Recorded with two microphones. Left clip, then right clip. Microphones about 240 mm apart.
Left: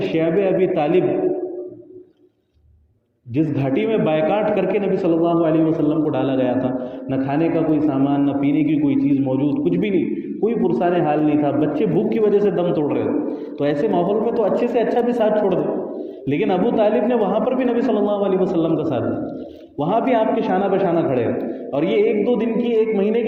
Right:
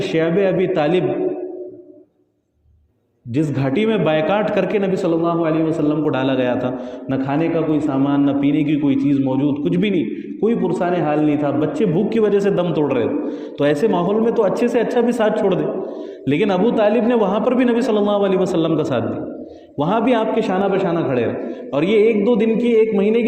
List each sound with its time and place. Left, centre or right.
0.0 s a man's voice: right
3.3 s a man's voice: right